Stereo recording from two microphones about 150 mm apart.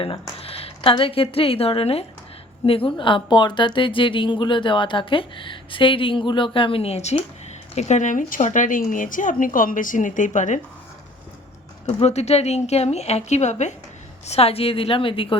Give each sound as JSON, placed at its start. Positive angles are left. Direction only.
{"t": 0.0, "sound": "a woman's voice", "side_deg": 40}
{"t": 11.9, "sound": "a woman's voice", "side_deg": 45}